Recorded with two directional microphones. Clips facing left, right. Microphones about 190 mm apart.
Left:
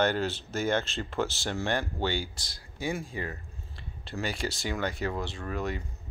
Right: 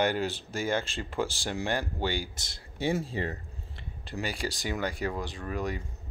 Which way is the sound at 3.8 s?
15° right (ahead or behind).